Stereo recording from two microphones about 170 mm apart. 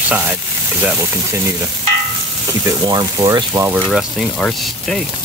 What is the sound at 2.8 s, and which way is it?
Speech, 25° right (ahead or behind).